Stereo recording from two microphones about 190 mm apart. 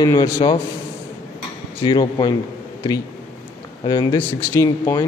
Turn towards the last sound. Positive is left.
turn(degrees=15)  # may be behind; listen again after turning